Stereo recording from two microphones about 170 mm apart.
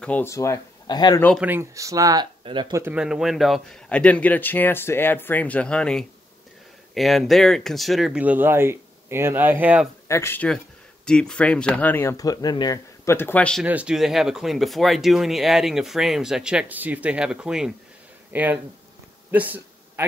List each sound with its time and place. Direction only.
0.0 s speech: 10° left (ahead or behind)
1.4 s speech: 15° right (ahead or behind)
2.9 s speech: 5° right (ahead or behind)
10.0 s speech: 15° left (ahead or behind)
13.7 s speech: 5° right (ahead or behind)
19.3 s a sound: 10° right (ahead or behind)